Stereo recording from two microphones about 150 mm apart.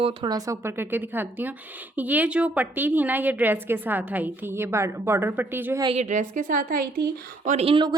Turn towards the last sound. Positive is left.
turn(degrees=-35)  # may be behind; listen again after turning